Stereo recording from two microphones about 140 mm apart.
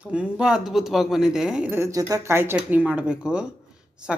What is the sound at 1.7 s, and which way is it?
A woman's voice, 20° right (ahead or behind).